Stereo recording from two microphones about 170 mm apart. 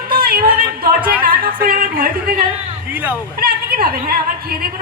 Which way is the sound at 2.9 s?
10° right (ahead or behind).